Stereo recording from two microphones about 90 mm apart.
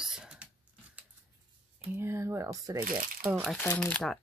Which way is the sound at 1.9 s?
25° right (ahead or behind).